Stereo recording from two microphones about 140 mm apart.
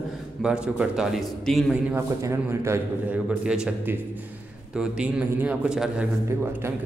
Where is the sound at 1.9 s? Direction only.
20° right (ahead or behind).